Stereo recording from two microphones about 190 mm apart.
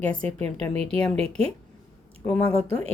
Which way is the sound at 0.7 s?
30° right (ahead or behind).